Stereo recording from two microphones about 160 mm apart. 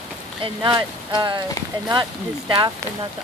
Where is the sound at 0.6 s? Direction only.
30° right (ahead or behind).